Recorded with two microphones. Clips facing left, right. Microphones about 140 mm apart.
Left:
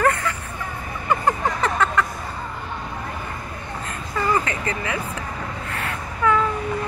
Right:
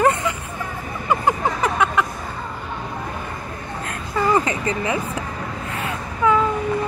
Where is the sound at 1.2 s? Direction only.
10° right (ahead or behind).